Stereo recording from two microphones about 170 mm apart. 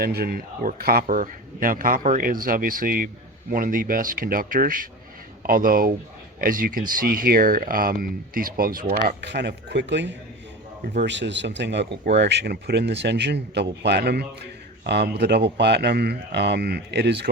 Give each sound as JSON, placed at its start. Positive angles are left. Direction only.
{"t": 0.0, "sound": "speech", "side_deg": -65}
{"t": 9.0, "sound": "speech", "side_deg": -90}